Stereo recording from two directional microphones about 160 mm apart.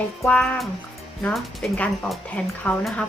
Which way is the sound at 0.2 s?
5° left (ahead or behind).